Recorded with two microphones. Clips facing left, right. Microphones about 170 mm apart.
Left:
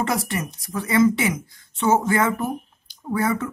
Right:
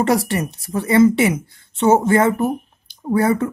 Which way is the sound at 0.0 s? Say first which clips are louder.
Right 7 dB; 35° right (ahead or behind).